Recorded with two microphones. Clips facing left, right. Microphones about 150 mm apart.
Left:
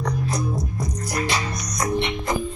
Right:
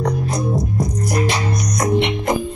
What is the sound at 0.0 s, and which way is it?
Music, 30° right (ahead or behind).